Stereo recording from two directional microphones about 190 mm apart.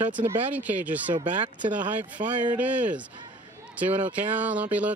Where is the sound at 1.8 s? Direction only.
40° right (ahead or behind).